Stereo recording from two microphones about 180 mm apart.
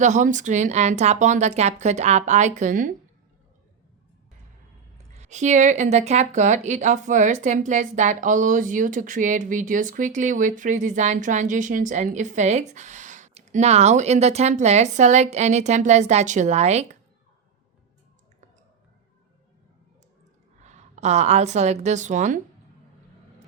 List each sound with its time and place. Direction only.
0.0 s speech: 45° right (ahead or behind)
5.1 s speech: 40° right (ahead or behind)
20.6 s a woman's voice: 40° right (ahead or behind)